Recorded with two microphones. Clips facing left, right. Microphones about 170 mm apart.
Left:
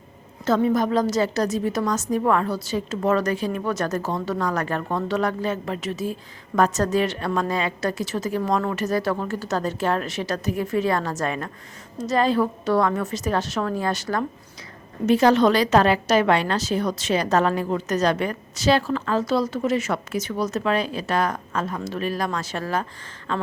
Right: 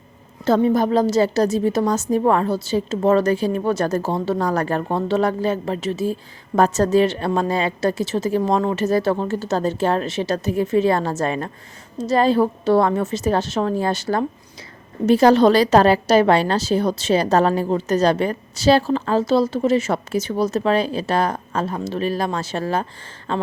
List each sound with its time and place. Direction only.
0.4 s a woman's voice: 30° right (ahead or behind)